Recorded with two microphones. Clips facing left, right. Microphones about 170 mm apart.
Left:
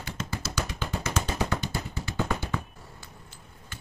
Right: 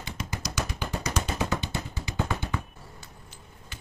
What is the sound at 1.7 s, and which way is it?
Music, 15° right (ahead or behind).